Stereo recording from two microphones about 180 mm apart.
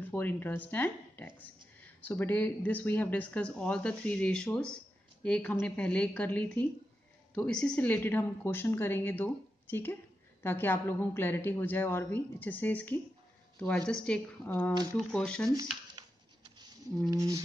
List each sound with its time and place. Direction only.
0.1 s speech: 10° left (ahead or behind)
17.1 s speech: 15° right (ahead or behind)